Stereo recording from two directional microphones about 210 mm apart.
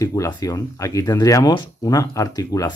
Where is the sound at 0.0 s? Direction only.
15° left (ahead or behind).